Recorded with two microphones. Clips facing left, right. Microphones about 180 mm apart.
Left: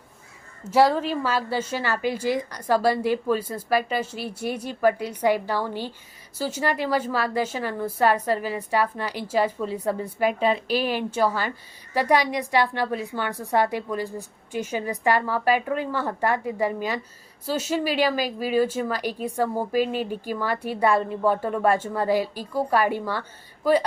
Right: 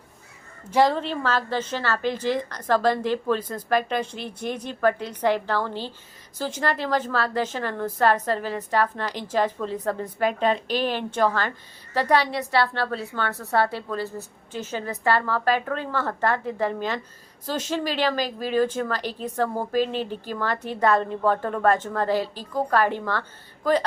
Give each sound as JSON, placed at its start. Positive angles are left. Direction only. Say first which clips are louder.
{"t": 0.7, "sound": "a woman's voice", "louder": "left 1 dB", "side_deg": 5}